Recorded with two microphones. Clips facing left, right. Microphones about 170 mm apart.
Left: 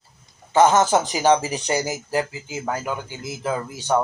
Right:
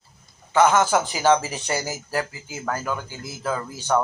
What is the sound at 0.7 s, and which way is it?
Speech, 25° left (ahead or behind).